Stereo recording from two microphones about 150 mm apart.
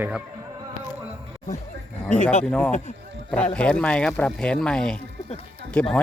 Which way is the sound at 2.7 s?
55° left (ahead or behind).